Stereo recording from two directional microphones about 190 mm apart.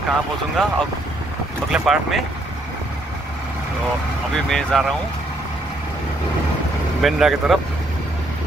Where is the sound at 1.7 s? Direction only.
Centre (ahead or behind).